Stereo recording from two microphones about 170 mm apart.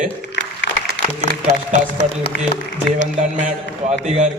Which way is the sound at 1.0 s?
90° left.